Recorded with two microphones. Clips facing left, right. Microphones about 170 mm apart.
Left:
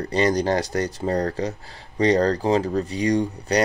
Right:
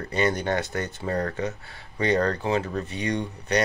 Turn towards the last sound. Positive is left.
turn(degrees=35)  # may be behind; listen again after turning